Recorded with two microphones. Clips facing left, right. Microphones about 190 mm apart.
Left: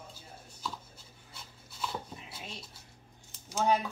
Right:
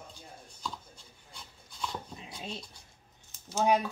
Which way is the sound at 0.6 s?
5° left (ahead or behind).